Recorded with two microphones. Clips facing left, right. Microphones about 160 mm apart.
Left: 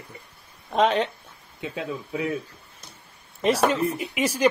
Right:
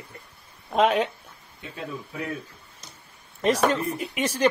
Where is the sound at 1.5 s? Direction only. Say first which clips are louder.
Left 4 dB; 90° left.